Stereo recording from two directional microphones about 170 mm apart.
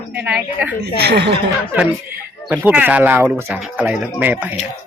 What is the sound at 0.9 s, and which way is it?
Speech, 75° right (ahead or behind).